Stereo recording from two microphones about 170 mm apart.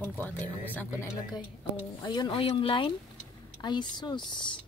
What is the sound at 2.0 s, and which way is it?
Speech, 25° left (ahead or behind).